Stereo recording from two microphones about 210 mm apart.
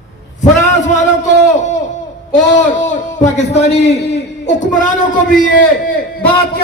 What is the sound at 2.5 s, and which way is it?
A man's voice, 35° left (ahead or behind).